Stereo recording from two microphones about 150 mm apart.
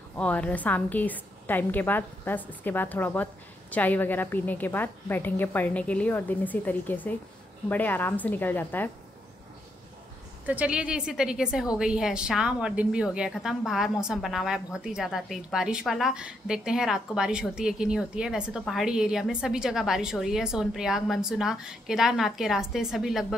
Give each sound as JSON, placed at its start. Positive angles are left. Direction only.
{"t": 0.2, "sound": "a woman's voice", "side_deg": 10}
{"t": 10.4, "sound": "a woman's voice", "side_deg": -10}